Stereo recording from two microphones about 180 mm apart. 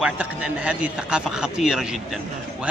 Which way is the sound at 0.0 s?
5° right (ahead or behind).